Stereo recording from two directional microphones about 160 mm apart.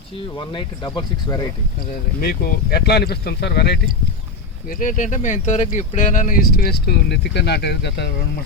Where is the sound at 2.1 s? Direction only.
70° left (ahead or behind); by 3.8 s 90° left.